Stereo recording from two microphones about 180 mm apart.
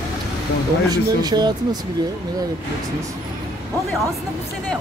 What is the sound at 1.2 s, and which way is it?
Speech, 25° right (ahead or behind).